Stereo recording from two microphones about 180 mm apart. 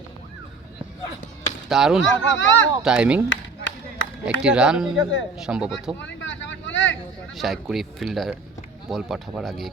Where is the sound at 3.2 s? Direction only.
90° left.